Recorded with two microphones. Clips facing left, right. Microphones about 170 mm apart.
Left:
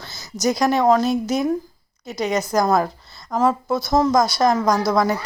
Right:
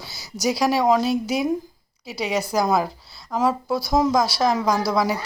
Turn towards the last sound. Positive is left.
turn(degrees=-5)  # may be behind; listen again after turning